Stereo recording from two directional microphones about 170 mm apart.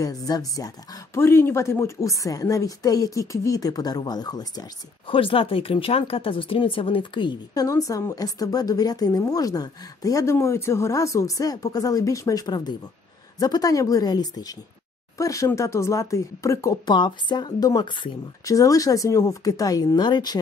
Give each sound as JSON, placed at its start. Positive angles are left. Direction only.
{"t": 0.0, "sound": "speech", "side_deg": 20}